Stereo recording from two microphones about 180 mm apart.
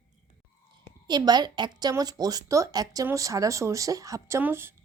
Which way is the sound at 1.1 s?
25° right (ahead or behind).